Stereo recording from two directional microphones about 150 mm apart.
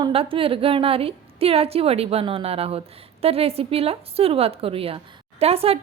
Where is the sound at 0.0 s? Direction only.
40° right (ahead or behind).